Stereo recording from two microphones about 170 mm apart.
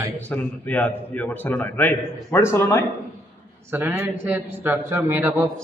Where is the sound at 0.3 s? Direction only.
10° left (ahead or behind).